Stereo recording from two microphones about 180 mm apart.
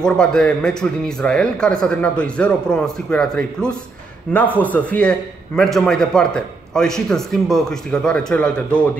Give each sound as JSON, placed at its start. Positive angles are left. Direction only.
{"t": 0.0, "sound": "a man's voice", "side_deg": 5}